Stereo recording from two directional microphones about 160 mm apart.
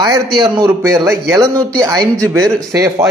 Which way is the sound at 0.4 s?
25° right (ahead or behind).